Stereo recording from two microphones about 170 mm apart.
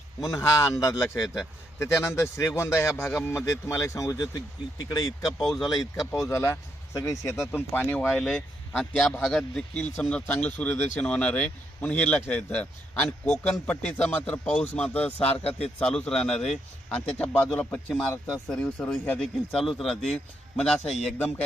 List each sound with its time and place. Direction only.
0.2 s a man's voice: 20° left (ahead or behind)
7.3 s speech: centre (ahead or behind)
7.7 s a man's voice: 10° left (ahead or behind)